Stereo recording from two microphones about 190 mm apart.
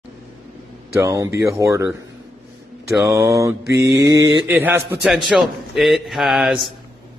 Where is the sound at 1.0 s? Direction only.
15° right (ahead or behind).